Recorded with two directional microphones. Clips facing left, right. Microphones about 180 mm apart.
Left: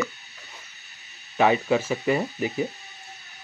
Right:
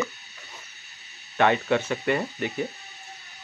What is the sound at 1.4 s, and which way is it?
Speech, 5° left (ahead or behind).